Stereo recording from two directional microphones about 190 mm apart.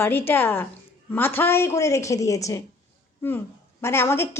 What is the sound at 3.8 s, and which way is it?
Speech, 15° left (ahead or behind).